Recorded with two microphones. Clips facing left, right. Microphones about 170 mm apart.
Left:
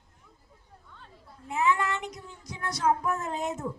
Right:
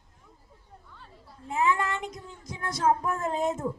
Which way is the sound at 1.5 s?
30° right (ahead or behind).